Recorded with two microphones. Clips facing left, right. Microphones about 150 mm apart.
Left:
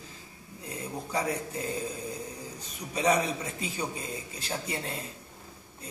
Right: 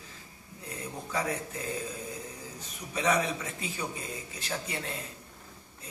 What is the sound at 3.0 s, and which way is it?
Speech, 30° left (ahead or behind).